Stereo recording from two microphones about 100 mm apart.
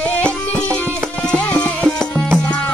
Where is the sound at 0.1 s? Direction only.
10° left (ahead or behind).